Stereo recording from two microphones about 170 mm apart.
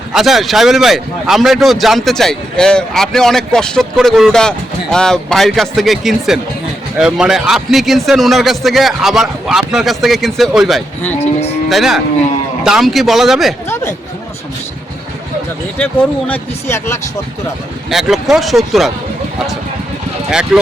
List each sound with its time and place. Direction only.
0.1 s a man's voice: centre (ahead or behind)
11.0 s speech: 10° left (ahead or behind)
11.7 s a man's voice: centre (ahead or behind)
13.7 s chatter: 15° left (ahead or behind)
15.8 s speech: 10° left (ahead or behind)
17.8 s a man's voice: centre (ahead or behind)
20.5 s a man's voice: 5° right (ahead or behind)